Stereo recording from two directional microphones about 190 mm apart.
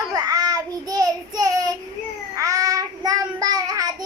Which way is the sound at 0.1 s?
20° right (ahead or behind).